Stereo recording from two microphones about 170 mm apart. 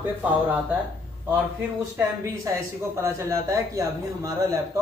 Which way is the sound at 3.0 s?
15° right (ahead or behind).